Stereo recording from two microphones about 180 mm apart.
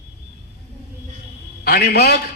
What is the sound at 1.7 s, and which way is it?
Speech, 60° left (ahead or behind).